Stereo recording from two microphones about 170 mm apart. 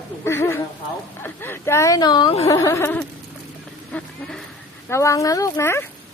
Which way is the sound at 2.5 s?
15° left (ahead or behind).